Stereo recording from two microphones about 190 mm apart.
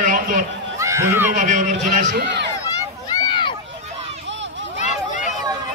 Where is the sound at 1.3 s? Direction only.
40° right (ahead or behind).